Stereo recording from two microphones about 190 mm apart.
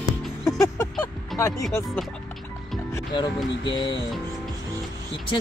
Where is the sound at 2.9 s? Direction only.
20° left (ahead or behind).